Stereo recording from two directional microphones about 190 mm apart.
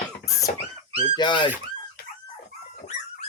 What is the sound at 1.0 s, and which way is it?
Speech, 25° left (ahead or behind).